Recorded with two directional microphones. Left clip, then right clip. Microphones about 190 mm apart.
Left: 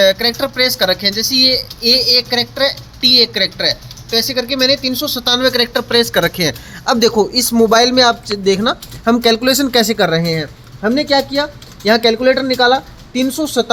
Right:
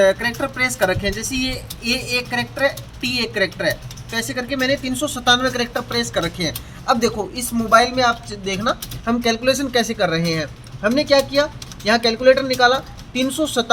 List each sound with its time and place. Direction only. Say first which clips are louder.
0.0 s speech: left 4 dB; 20° left (ahead or behind); by 13.7 s 40° left (ahead or behind)